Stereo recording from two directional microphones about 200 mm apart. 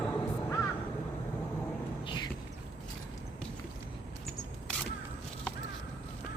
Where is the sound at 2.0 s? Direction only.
20° left (ahead or behind).